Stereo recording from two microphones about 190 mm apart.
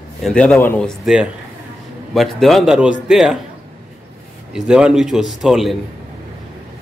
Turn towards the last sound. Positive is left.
turn(degrees=0)  # may be behind; listen again after turning